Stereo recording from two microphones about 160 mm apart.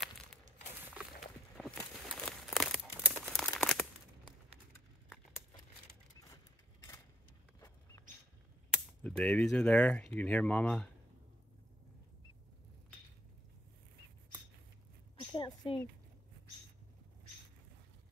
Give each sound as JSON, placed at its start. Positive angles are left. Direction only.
{"t": 1.2, "sound": "crumpling", "side_deg": 0}
{"t": 9.0, "sound": "speech", "side_deg": 5}
{"t": 15.1, "sound": "a sound", "side_deg": 30}